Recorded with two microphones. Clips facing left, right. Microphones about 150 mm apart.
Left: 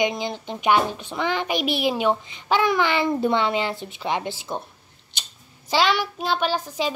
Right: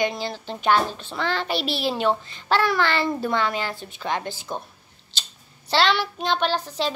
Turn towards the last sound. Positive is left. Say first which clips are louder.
# even
turn(degrees=10)  # may be behind; listen again after turning